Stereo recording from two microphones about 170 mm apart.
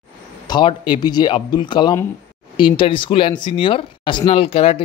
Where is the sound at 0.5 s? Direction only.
30° left (ahead or behind).